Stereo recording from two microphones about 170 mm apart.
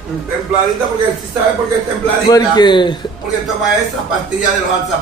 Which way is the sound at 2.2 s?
25° left (ahead or behind).